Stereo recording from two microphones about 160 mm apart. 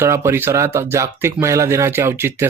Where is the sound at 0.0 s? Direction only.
15° right (ahead or behind).